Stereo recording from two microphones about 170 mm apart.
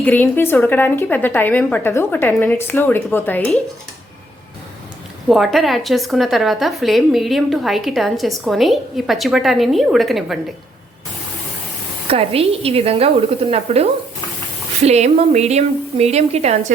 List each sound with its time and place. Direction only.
0.0 s a woman's voice: 10° left (ahead or behind)
5.3 s a woman's voice: centre (ahead or behind)
12.0 s a woman's voice: 35° right (ahead or behind)
14.8 s a woman's voice: 40° right (ahead or behind)